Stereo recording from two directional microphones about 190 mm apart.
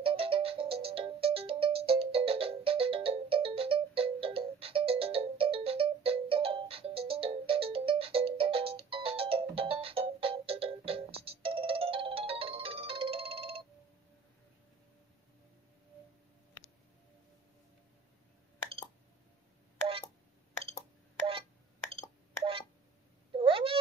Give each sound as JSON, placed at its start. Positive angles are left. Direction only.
{"t": 0.0, "sound": "music", "side_deg": -30}
{"t": 23.3, "sound": "meow", "side_deg": -30}